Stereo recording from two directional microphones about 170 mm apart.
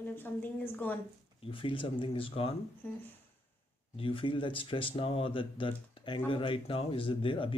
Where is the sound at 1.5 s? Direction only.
30° left (ahead or behind).